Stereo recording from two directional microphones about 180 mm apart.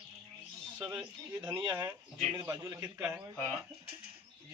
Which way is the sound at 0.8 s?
10° right (ahead or behind).